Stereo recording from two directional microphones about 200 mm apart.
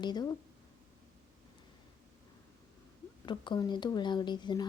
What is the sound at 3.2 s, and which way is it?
Speech, 20° left (ahead or behind).